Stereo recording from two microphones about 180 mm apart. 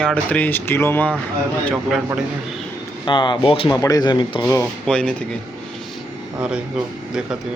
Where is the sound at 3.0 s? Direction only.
25° left (ahead or behind).